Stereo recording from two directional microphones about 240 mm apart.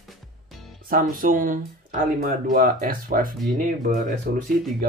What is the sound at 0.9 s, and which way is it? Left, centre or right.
Speech, right.